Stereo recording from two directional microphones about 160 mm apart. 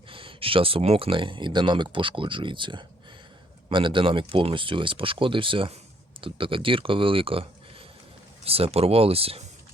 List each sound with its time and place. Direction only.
0.1 s speech: 35° right (ahead or behind)